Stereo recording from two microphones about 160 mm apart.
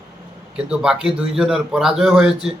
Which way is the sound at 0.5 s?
5° right (ahead or behind).